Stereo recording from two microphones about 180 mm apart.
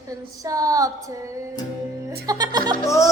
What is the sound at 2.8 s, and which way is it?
Music, 15° left (ahead or behind).